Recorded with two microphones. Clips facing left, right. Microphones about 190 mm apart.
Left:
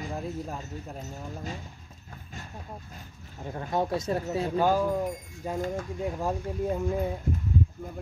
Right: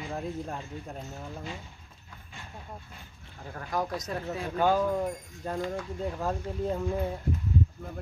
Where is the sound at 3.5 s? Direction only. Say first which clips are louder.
Left 4 dB; 25° left (ahead or behind).